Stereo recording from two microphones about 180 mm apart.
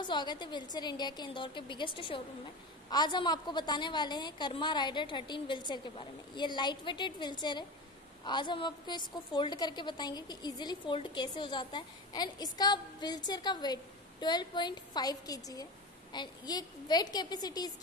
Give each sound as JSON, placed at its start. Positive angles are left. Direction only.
{"t": 0.0, "sound": "a woman's voice", "side_deg": 25}